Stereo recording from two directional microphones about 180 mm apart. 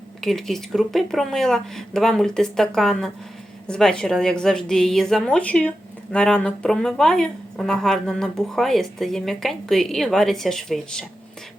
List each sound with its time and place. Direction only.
0.2 s a woman's voice: centre (ahead or behind)